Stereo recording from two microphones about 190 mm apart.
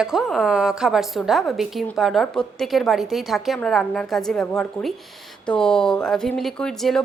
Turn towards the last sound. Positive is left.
turn(degrees=0)  # may be behind; listen again after turning